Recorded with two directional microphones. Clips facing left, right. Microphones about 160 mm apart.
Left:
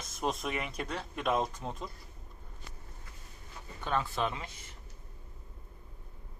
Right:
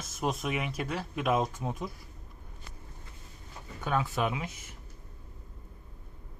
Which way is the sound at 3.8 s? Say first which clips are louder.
Right 2 dB; 5° right (ahead or behind).